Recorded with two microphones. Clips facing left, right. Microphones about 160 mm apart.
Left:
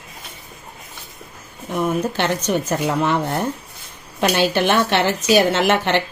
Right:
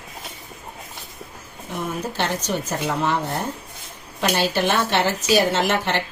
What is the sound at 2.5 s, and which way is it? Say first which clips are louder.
Speech: left 5 dB; 65° left (ahead or behind).